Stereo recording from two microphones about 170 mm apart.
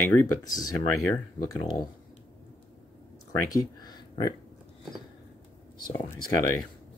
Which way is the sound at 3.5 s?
20° left (ahead or behind).